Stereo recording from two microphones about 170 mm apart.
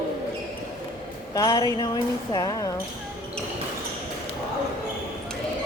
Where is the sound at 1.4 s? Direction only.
25° left (ahead or behind).